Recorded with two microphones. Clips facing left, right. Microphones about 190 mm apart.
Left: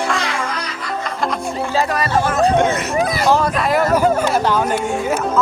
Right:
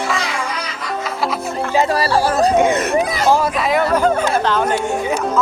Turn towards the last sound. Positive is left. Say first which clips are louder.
# even
turn(degrees=10)  # may be behind; listen again after turning